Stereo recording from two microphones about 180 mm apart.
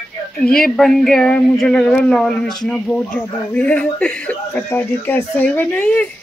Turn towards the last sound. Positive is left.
turn(degrees=5)  # may be behind; listen again after turning